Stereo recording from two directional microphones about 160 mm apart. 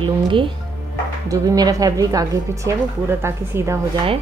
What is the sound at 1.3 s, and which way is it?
Speech, 20° right (ahead or behind).